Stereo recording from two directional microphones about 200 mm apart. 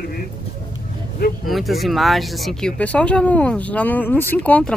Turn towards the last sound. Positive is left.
turn(degrees=5)  # may be behind; listen again after turning